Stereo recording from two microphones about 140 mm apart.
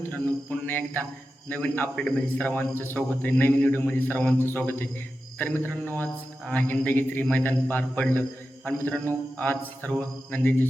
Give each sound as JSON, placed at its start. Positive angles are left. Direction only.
{"t": 0.5, "sound": "a man's voice", "side_deg": 10}